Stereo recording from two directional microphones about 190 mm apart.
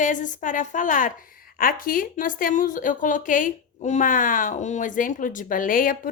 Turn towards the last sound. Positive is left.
turn(degrees=45)  # may be behind; listen again after turning